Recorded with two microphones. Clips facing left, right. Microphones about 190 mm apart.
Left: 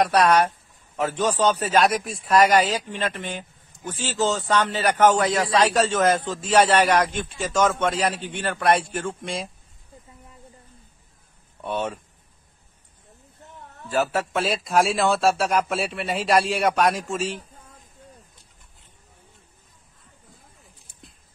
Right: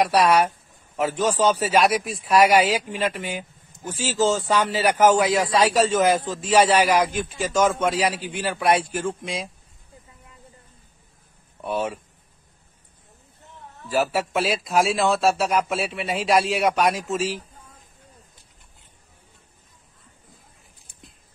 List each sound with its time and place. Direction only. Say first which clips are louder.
0.0 s a man's voice: even; 5° right (ahead or behind)
11.6 s a man's voice: right 1 dB; 5° right (ahead or behind)
13.8 s speech: right 1 dB; 5° right (ahead or behind)